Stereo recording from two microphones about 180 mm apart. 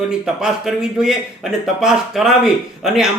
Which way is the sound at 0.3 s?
5° right (ahead or behind).